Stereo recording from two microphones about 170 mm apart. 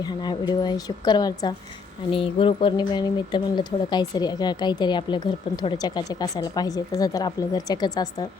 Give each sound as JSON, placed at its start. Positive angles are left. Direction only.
{"t": 0.0, "sound": "speech", "side_deg": 25}